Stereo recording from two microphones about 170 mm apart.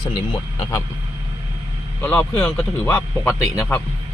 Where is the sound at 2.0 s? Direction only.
10° left (ahead or behind).